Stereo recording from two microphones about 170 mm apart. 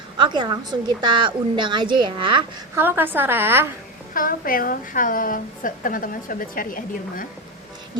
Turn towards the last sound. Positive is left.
turn(degrees=55)  # may be behind; listen again after turning